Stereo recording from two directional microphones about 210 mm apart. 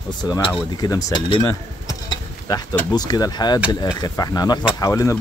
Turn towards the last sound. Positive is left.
turn(degrees=15)  # may be behind; listen again after turning